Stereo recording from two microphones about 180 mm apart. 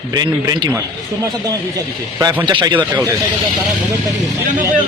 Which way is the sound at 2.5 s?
25° right (ahead or behind).